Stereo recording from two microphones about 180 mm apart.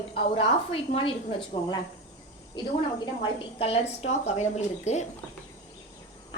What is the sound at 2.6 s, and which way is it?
A woman's voice, 25° left (ahead or behind).